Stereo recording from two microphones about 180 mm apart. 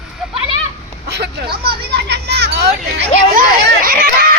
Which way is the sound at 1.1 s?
65° right (ahead or behind).